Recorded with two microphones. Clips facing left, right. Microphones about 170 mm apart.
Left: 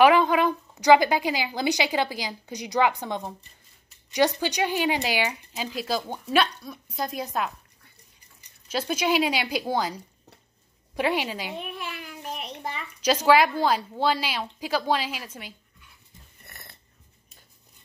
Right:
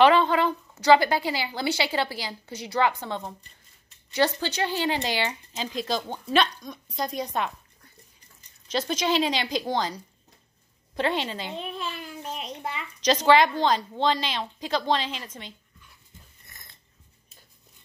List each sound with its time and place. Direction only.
0.0 s a woman's voice: 10° left (ahead or behind)
8.6 s a woman's voice: 10° left (ahead or behind)
11.8 s a sound: 25° right (ahead or behind)
13.0 s a woman's voice: 10° left (ahead or behind)
16.4 s wheeze: 65° left (ahead or behind)